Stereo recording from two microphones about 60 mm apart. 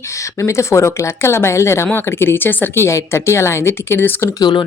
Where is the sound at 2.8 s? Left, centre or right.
Left.